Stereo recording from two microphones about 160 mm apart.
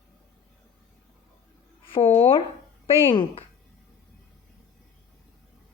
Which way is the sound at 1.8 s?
35° left (ahead or behind).